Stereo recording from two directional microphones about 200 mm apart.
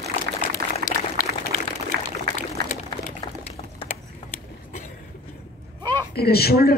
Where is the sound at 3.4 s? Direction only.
30° left (ahead or behind).